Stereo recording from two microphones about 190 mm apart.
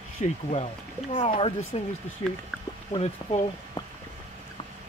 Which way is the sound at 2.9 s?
30° left (ahead or behind).